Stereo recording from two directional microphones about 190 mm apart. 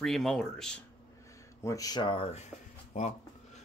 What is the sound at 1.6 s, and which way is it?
Speech, 15° left (ahead or behind).